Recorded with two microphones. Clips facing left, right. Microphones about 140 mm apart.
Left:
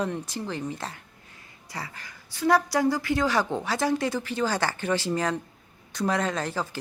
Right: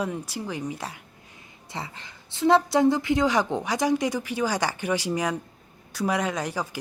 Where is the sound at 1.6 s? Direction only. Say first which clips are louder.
Right 2 dB; 25° right (ahead or behind).